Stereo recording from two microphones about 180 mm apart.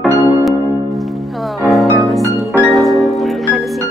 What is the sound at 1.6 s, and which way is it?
Music, centre (ahead or behind).